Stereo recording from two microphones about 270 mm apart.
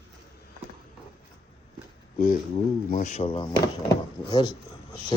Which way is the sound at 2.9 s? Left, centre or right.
Left.